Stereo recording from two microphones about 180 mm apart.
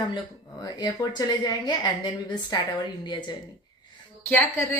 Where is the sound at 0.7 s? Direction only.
20° left (ahead or behind).